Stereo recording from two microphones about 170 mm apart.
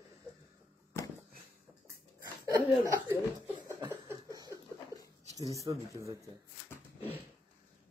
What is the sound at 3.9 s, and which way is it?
Laughter, 20° right (ahead or behind).